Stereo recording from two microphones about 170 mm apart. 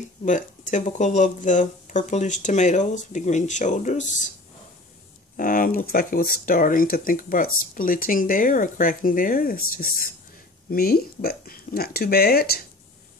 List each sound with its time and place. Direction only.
0.2 s speech: 45° left (ahead or behind)
5.4 s speech: 55° left (ahead or behind)